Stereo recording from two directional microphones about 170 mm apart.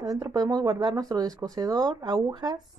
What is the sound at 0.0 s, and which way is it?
Speech, 20° right (ahead or behind).